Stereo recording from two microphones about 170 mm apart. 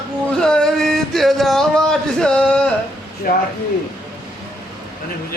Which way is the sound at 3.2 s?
60° left (ahead or behind).